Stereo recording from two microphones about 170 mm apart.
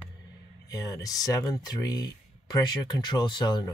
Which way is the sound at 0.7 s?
20° left (ahead or behind).